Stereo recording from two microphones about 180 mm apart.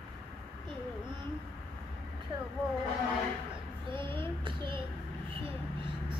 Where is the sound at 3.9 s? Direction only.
30° right (ahead or behind).